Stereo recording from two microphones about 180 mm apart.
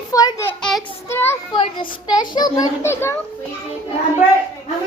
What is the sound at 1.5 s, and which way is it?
A child's voice, 25° left (ahead or behind).